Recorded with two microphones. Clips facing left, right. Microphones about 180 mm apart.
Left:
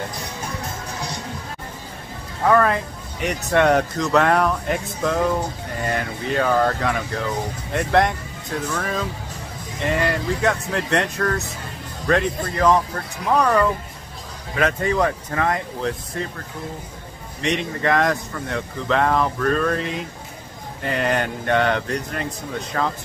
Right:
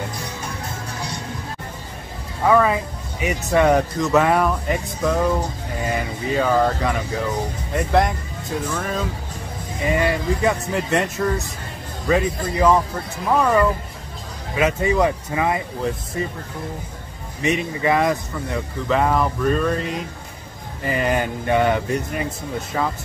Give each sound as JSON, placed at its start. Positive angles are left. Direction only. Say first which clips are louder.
{"t": 2.4, "sound": "speech", "louder": "right 1 dB", "side_deg": -5}
{"t": 17.4, "sound": "speech", "louder": "right 2 dB", "side_deg": -5}